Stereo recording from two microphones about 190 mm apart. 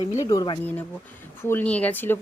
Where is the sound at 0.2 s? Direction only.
20° left (ahead or behind).